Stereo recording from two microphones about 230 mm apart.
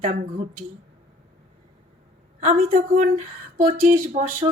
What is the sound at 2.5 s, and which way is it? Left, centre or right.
A woman's voice, right.